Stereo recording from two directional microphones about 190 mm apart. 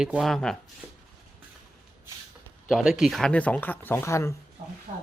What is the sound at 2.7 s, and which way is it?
Speech, centre (ahead or behind).